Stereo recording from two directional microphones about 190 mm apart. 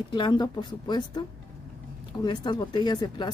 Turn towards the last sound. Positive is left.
turn(degrees=25)  # may be behind; listen again after turning